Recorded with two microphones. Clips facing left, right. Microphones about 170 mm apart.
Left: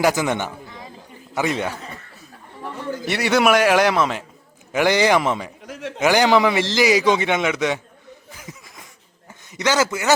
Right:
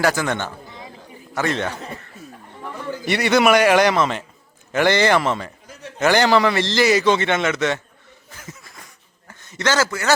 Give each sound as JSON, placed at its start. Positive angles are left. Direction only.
{"t": 0.0, "sound": "a man's voice", "side_deg": 15}
{"t": 3.1, "sound": "a man's voice", "side_deg": 5}
{"t": 5.6, "sound": "a sound", "side_deg": 90}
{"t": 6.0, "sound": "a man's voice", "side_deg": 10}
{"t": 8.3, "sound": "laughter", "side_deg": 10}
{"t": 9.4, "sound": "a man's voice", "side_deg": 15}